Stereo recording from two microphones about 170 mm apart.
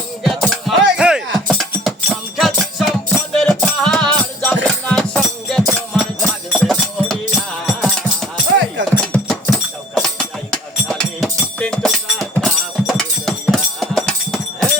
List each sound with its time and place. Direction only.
0.2 s music: centre (ahead or behind)